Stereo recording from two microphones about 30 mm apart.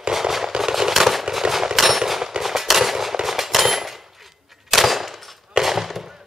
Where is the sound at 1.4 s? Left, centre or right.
Right.